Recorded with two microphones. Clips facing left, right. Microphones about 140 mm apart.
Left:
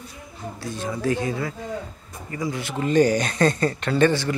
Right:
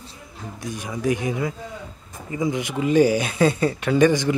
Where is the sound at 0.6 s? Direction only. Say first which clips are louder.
Left 1 dB; 15° right (ahead or behind).